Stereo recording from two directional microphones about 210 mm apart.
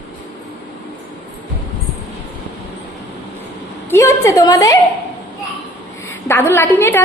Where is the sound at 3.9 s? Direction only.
15° left (ahead or behind).